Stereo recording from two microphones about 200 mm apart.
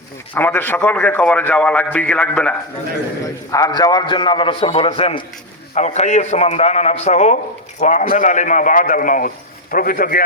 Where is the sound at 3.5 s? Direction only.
20° left (ahead or behind).